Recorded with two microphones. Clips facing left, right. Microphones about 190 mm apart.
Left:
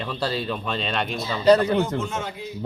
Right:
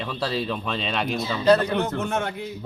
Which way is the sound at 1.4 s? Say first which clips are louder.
Left 2 dB; 15° left (ahead or behind).